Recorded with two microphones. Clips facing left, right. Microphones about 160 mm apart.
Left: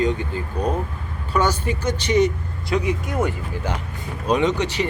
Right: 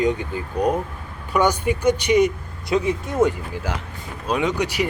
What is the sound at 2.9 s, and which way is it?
Speech, 25° right (ahead or behind).